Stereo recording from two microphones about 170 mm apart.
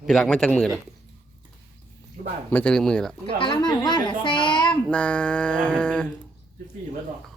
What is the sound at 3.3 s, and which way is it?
A woman's voice, 30° left (ahead or behind).